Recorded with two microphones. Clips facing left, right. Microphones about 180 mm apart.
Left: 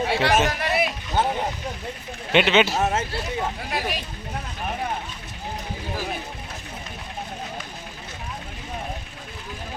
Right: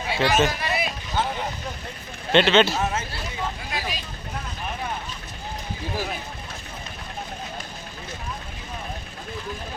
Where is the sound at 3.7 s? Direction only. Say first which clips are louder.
Left 3 dB; 65° left (ahead or behind).